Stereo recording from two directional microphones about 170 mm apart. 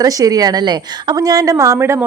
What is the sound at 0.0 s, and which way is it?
A woman's voice, 20° right (ahead or behind).